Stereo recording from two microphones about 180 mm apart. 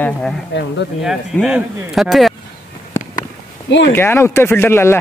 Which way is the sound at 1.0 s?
Centre (ahead or behind).